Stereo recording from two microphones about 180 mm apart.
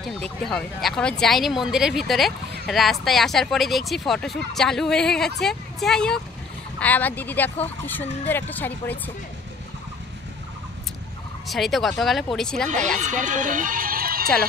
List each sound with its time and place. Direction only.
0.0 s speech: centre (ahead or behind)
11.4 s fowl: centre (ahead or behind)
12.0 s speech: centre (ahead or behind)
12.7 s speech: 40° right (ahead or behind)